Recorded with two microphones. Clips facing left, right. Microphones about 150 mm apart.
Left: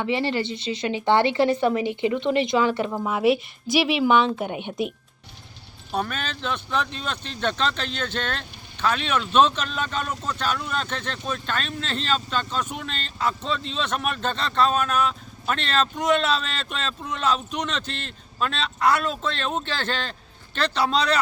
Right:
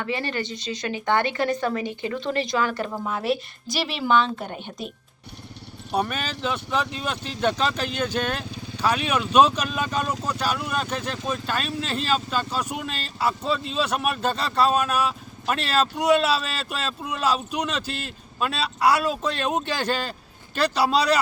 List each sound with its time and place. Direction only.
0.0 s speech: 25° left (ahead or behind)
2.9 s speech: 10° left (ahead or behind)
5.9 s speech: 10° right (ahead or behind)